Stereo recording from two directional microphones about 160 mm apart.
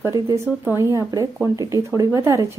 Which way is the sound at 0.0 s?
20° right (ahead or behind).